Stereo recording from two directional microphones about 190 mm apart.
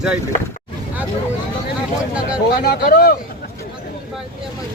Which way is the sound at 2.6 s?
55° left (ahead or behind).